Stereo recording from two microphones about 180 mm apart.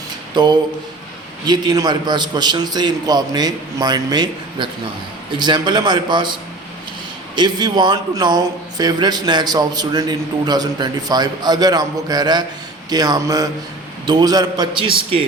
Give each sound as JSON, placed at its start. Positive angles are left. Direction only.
{"t": 0.3, "sound": "speech", "side_deg": -25}